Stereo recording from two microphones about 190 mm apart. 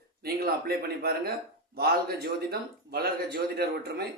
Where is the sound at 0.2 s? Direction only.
55° right (ahead or behind).